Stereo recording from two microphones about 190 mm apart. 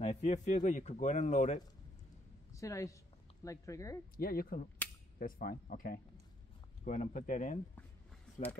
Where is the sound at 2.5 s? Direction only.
15° left (ahead or behind).